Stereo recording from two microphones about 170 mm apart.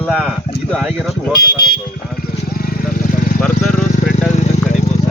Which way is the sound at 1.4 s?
65° left (ahead or behind).